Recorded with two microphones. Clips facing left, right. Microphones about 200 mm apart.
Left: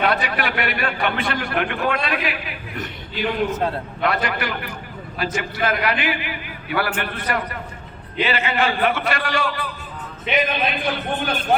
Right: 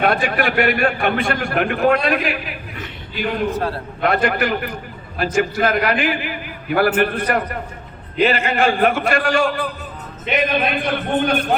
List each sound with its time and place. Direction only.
0.0 s a man's voice: 50° right (ahead or behind)
4.0 s a man's voice: 50° right (ahead or behind)